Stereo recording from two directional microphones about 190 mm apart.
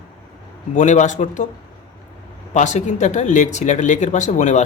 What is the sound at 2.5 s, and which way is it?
Speech, 40° left (ahead or behind).